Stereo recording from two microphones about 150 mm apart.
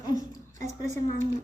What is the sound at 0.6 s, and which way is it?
Speech, 55° right (ahead or behind).